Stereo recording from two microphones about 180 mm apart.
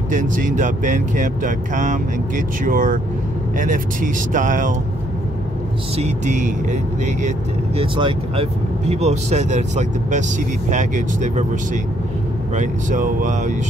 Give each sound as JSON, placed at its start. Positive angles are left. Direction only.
{"t": 0.1, "sound": "speech", "side_deg": -45}
{"t": 5.9, "sound": "speech", "side_deg": -40}
{"t": 7.8, "sound": "speech", "side_deg": -30}